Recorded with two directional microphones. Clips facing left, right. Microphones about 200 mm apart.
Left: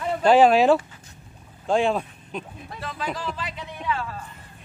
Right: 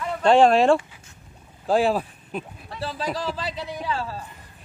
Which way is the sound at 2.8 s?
35° right (ahead or behind).